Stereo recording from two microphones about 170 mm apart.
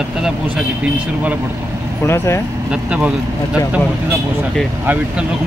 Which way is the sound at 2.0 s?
15° left (ahead or behind).